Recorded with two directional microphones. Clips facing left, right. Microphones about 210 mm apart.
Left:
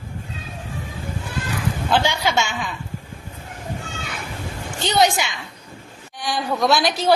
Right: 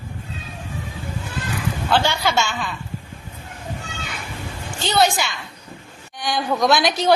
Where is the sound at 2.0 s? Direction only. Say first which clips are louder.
Even; 15° left (ahead or behind).